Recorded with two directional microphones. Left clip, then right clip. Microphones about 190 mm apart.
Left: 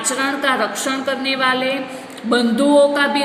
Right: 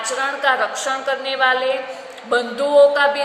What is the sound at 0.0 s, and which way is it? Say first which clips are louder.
A woman's voice: even; 15° left (ahead or behind).